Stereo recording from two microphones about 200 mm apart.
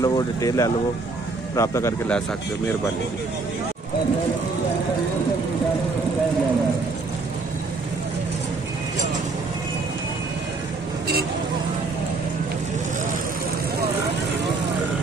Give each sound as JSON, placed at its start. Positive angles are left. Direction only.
{"t": 0.0, "sound": "speech", "side_deg": 15}